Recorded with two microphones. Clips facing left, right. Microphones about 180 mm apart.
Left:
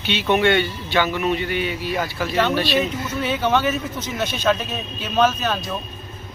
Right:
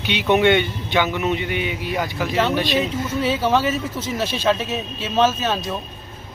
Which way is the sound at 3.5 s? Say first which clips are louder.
Right 1 dB; 30° right (ahead or behind).